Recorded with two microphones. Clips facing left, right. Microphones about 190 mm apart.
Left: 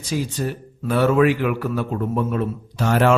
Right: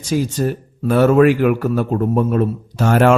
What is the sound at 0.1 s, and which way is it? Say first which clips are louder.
A man's voice: right 6 dB; 45° right (ahead or behind).